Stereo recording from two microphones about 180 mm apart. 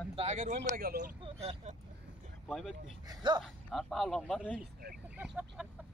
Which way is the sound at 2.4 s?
Centre (ahead or behind).